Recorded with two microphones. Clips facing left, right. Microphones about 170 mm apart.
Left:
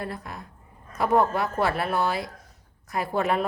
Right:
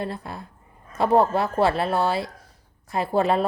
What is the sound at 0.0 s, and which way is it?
A woman's voice, 30° right (ahead or behind).